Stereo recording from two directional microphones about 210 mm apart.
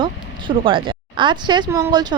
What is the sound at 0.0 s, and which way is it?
Speech, 25° right (ahead or behind).